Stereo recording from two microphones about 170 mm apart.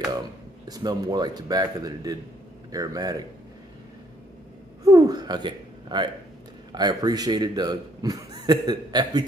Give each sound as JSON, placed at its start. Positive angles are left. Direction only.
{"t": 0.7, "sound": "a man's voice", "side_deg": -20}
{"t": 4.8, "sound": "a man's voice", "side_deg": -20}